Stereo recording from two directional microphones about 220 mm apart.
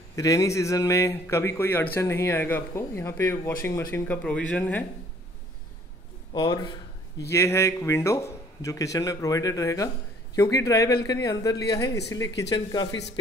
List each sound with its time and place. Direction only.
0.1 s a man's voice: 15° left (ahead or behind)
6.3 s a man's voice: 20° left (ahead or behind)